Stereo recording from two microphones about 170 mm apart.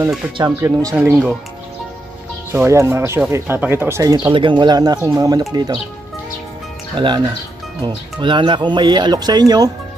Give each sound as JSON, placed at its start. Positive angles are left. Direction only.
{"t": 0.4, "sound": "speech", "side_deg": -20}
{"t": 2.5, "sound": "speech", "side_deg": -15}
{"t": 7.0, "sound": "speech", "side_deg": -30}